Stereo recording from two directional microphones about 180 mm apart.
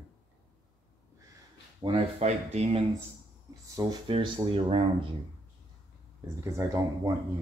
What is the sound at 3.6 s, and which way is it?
Speech, 20° right (ahead or behind).